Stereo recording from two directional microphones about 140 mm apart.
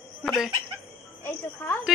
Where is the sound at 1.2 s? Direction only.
15° left (ahead or behind).